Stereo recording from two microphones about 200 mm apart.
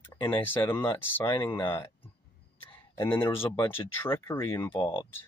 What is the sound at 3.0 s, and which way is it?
Speech, 10° left (ahead or behind).